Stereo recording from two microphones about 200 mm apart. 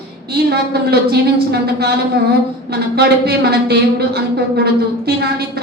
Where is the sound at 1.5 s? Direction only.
55° right (ahead or behind).